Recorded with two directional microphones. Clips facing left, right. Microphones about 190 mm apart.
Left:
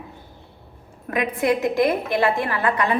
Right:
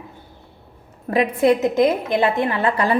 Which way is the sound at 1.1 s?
30° right (ahead or behind).